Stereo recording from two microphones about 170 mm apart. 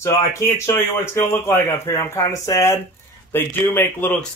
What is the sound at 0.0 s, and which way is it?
Speech, 15° left (ahead or behind).